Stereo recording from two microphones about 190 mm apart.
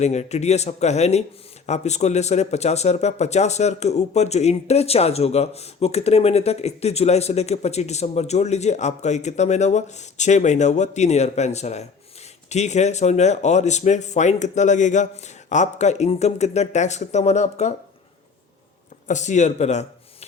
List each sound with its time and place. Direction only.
0.0 s speech: 35° left (ahead or behind)
19.0 s speech: 40° left (ahead or behind)